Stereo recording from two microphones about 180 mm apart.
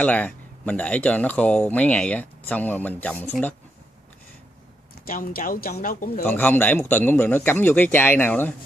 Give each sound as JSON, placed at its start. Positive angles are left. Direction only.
{"t": 0.0, "sound": "speech", "side_deg": 10}
{"t": 5.0, "sound": "speech", "side_deg": 55}
{"t": 6.2, "sound": "speech", "side_deg": 10}